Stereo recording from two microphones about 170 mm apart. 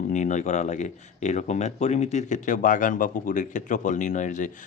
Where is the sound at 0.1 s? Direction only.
45° left (ahead or behind).